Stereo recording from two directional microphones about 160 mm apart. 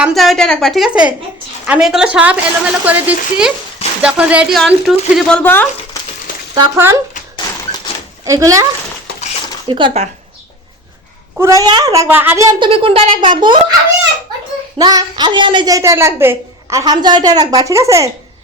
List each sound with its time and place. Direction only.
0.0 s a woman's voice: centre (ahead or behind)
5.4 s speech: 15° left (ahead or behind)
6.7 s a woman's voice: 15° right (ahead or behind)
8.2 s a woman's voice: 20° right (ahead or behind)
9.6 s a child's voice: 30° right (ahead or behind)
11.3 s a woman's voice: 20° right (ahead or behind)
12.5 s a child's voice: 30° right (ahead or behind)
14.8 s a woman's voice: 25° right (ahead or behind)